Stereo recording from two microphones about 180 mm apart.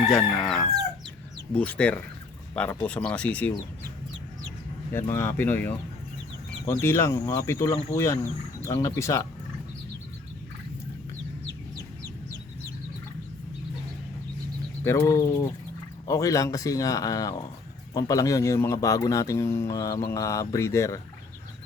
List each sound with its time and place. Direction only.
0.1 s chicken: centre (ahead or behind)
1.5 s speech: 5° left (ahead or behind)
4.9 s speech: 15° left (ahead or behind)
14.8 s speech: 15° left (ahead or behind)